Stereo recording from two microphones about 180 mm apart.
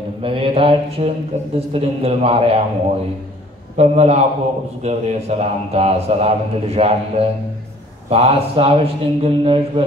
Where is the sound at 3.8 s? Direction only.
35° right (ahead or behind).